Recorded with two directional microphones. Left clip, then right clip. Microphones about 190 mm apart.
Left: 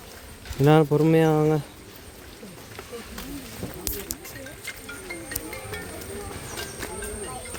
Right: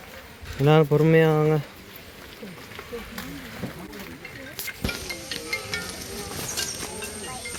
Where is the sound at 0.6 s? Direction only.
15° left (ahead or behind).